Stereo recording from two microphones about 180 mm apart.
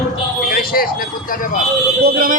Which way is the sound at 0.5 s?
55° left (ahead or behind).